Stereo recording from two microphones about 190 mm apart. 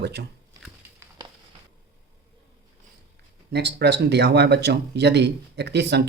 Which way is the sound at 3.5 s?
60° right (ahead or behind).